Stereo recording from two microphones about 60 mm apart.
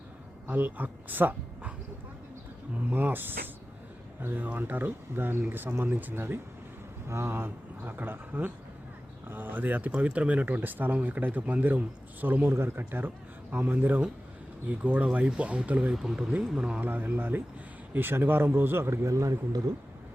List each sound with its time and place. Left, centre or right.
0.4 s speech: right
2.9 s speech: right
15.0 s speech: centre
16.0 s speech: centre
16.8 s speech: right
19.0 s speech: right